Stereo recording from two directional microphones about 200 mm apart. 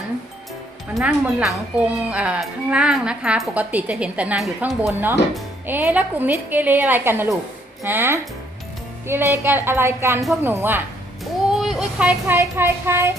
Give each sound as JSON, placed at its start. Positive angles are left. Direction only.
{"t": 0.9, "sound": "a woman's voice", "side_deg": 0}